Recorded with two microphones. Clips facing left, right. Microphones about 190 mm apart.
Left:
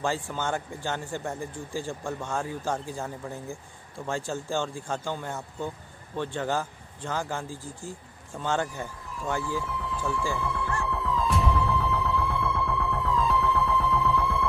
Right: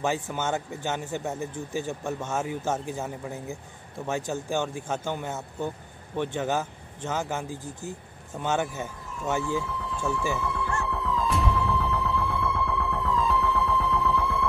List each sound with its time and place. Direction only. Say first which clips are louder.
0.0 s speech: right 1 dB; 20° right (ahead or behind)
10.8 s music: left 1 dB; centre (ahead or behind)